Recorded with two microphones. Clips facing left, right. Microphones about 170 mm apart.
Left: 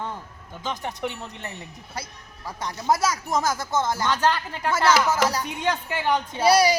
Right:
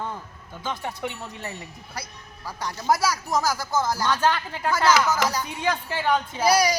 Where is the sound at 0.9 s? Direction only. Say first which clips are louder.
Left 1 dB; 5° right (ahead or behind).